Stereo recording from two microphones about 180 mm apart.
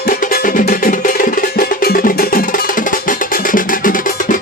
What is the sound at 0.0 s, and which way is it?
Music, 55° left (ahead or behind).